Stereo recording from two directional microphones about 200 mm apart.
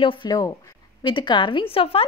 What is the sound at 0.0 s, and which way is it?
A woman's voice, 25° left (ahead or behind).